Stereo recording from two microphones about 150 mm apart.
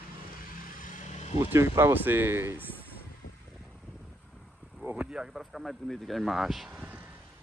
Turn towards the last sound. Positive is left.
turn(degrees=-10)  # may be behind; listen again after turning